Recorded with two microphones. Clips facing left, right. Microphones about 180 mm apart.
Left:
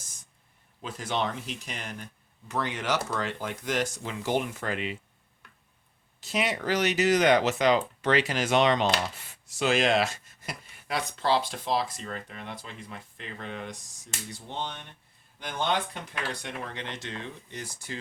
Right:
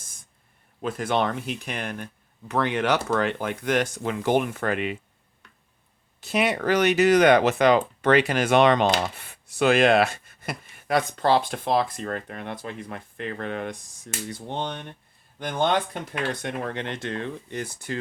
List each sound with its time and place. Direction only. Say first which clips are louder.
0.8 s speech: right 6 dB; 55° right (ahead or behind)
6.1 s speech: right 5 dB; 60° right (ahead or behind)